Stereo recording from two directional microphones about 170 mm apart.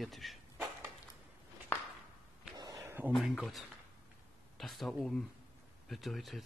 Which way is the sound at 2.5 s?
20° right (ahead or behind).